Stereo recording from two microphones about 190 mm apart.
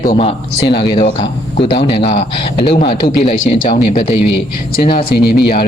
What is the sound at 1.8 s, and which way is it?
Speech, 30° left (ahead or behind).